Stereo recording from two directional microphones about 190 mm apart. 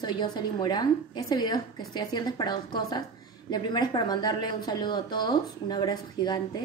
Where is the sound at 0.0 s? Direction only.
25° left (ahead or behind).